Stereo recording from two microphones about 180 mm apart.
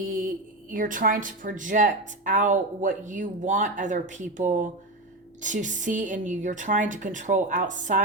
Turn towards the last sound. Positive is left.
turn(degrees=-45)  # may be behind; listen again after turning